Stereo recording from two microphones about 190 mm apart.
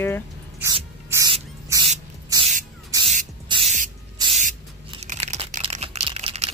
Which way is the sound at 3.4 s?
25° right (ahead or behind).